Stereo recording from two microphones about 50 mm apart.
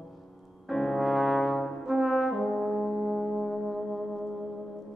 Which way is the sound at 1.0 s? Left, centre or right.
Centre.